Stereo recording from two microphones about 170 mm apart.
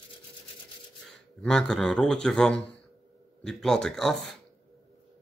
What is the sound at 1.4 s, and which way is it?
A man's voice, 5° left (ahead or behind).